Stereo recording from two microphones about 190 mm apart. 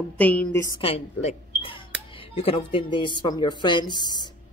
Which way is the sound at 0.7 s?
30° left (ahead or behind).